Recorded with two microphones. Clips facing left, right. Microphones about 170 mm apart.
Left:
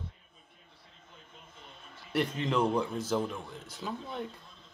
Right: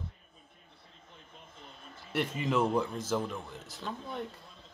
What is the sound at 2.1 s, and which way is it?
A man's voice, 5° right (ahead or behind).